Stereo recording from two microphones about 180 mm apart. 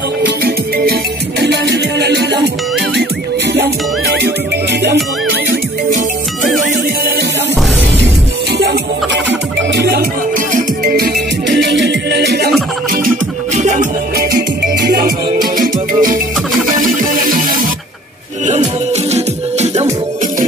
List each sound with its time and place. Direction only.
1.4 s music: 70° right (ahead or behind)
8.5 s music: 70° right (ahead or behind)
10.5 s music: 50° right (ahead or behind)
11.4 s music: 75° right (ahead or behind)
13.6 s music: 40° right (ahead or behind)
14.9 s music: 55° right (ahead or behind)
19.1 s music: 35° right (ahead or behind)